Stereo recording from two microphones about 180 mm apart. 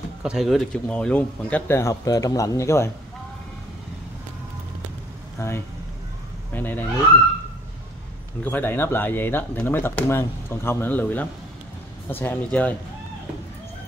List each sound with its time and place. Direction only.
0.2 s speech: 5° right (ahead or behind); by 2.9 s 15° left (ahead or behind)
5.4 s speech: 15° left (ahead or behind)
8.4 s speech: 10° left (ahead or behind)